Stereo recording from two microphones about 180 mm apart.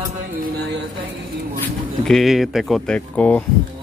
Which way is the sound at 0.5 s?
70° right (ahead or behind).